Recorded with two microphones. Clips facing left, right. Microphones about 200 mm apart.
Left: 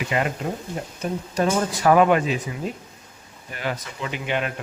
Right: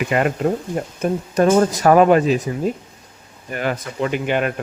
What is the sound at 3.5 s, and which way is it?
Speech, 50° right (ahead or behind).